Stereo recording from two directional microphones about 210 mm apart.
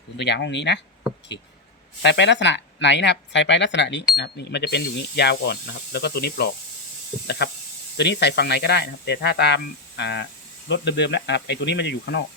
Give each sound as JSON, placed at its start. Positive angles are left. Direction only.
{"t": 0.2, "sound": "speech", "side_deg": 55}
{"t": 2.0, "sound": "speech", "side_deg": 55}